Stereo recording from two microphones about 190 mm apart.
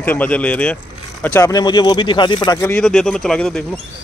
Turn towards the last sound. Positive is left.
turn(degrees=0)  # may be behind; listen again after turning